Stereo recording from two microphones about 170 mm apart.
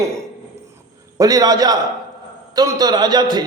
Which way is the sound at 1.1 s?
20° right (ahead or behind).